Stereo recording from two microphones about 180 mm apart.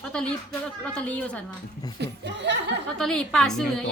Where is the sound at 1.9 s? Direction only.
70° right (ahead or behind).